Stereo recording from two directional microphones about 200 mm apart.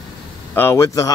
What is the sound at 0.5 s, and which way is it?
Speech, 10° left (ahead or behind).